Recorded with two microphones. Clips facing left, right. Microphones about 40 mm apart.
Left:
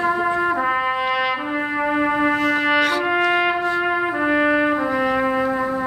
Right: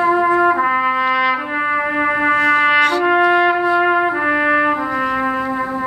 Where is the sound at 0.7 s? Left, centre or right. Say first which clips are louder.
Right 4 dB; centre.